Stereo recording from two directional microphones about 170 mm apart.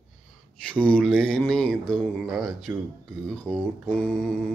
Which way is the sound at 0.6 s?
5° left (ahead or behind).